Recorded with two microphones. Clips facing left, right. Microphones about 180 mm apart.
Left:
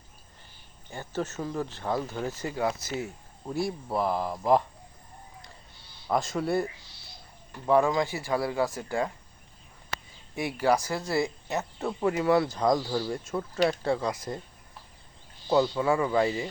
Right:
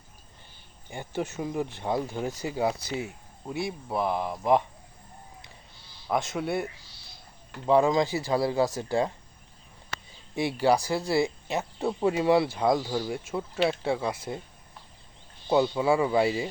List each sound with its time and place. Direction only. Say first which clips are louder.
0.9 s speech: right 1 dB; 15° right (ahead or behind)
3.4 s speech: left 2 dB; centre (ahead or behind)
6.1 s speech: left 1 dB; centre (ahead or behind)
7.6 s speech: right 2 dB; 20° right (ahead or behind)
8.1 s speech: right 3 dB; 35° right (ahead or behind)
10.3 s speech: right 2 dB; 30° right (ahead or behind); by 14.1 s 5° right (ahead or behind)
15.4 s speech: right 1 dB; 15° right (ahead or behind)